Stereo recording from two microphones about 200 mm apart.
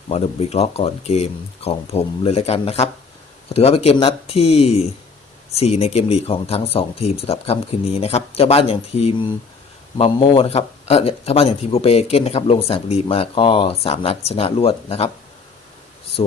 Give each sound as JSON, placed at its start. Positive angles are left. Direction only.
{"t": 0.1, "sound": "speech", "side_deg": 30}